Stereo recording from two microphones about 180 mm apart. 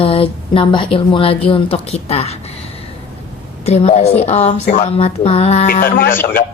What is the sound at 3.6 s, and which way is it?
A woman's voice, 35° left (ahead or behind).